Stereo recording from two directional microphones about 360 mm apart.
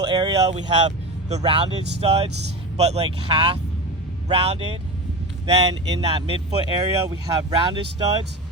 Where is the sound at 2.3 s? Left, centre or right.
Right.